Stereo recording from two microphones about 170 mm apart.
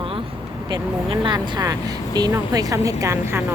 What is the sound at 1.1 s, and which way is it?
Speech, 30° right (ahead or behind).